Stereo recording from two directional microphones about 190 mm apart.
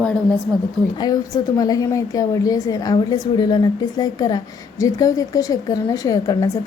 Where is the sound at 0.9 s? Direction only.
20° left (ahead or behind).